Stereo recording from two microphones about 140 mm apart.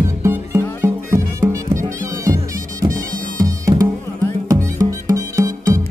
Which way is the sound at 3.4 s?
25° right (ahead or behind).